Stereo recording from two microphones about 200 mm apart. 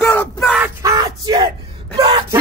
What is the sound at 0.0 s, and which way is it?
Yell, 10° left (ahead or behind).